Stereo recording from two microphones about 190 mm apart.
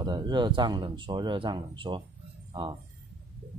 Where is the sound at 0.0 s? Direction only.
25° right (ahead or behind).